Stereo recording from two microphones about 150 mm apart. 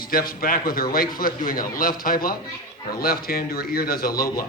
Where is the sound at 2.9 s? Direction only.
85° left.